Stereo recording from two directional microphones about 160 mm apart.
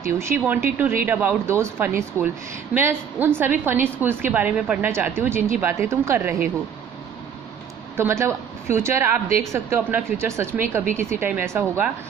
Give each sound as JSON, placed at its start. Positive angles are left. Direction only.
{"t": 0.0, "sound": "a woman's voice", "side_deg": -15}
{"t": 7.9, "sound": "a woman's voice", "side_deg": -15}